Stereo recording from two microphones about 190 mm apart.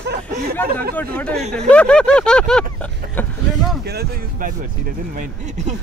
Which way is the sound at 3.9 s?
55° right (ahead or behind).